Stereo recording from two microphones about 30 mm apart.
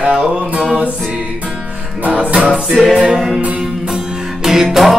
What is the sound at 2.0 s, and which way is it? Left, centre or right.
Music, right.